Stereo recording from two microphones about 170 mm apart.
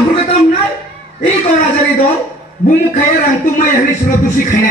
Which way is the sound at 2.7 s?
50° left (ahead or behind).